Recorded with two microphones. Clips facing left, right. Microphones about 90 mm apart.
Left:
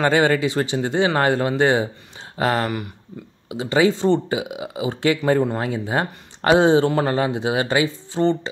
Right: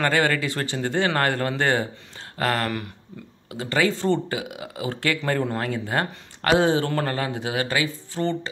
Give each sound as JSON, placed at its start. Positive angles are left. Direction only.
{"t": 0.0, "sound": "speech", "side_deg": 20}